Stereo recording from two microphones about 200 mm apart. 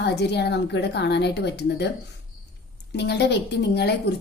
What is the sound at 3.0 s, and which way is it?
A woman's voice, 55° left (ahead or behind).